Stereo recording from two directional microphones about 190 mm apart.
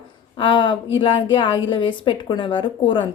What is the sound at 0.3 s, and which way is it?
Speech, 25° left (ahead or behind).